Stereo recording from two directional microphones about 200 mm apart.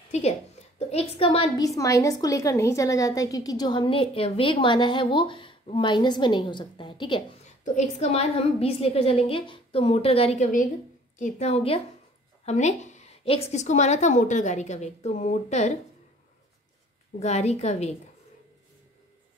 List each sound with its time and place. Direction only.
0.7 s a woman's voice: 30° left (ahead or behind)
1.6 s a woman's voice: 15° left (ahead or behind); by 15.8 s 35° left (ahead or behind)
17.2 s a woman's voice: 35° left (ahead or behind)